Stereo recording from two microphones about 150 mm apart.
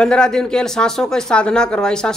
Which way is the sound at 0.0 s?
5° left (ahead or behind).